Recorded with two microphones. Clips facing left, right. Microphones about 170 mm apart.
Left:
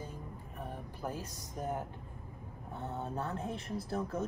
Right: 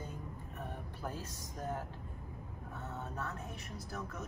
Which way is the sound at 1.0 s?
15° left (ahead or behind).